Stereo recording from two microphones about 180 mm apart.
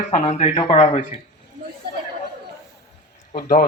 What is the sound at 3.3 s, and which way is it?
Speech, 50° left (ahead or behind).